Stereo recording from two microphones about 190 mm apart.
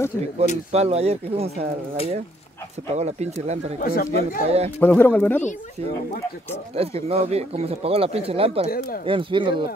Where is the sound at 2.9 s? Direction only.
35° right (ahead or behind).